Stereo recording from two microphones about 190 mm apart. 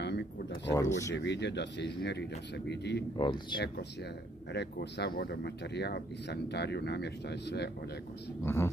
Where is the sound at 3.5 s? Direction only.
55° left (ahead or behind).